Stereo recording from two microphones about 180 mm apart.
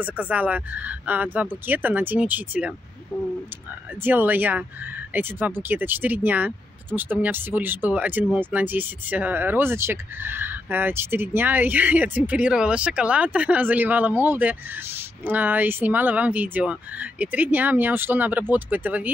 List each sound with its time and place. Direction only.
0.0 s speech: 5° right (ahead or behind)
4.0 s speech: 10° right (ahead or behind)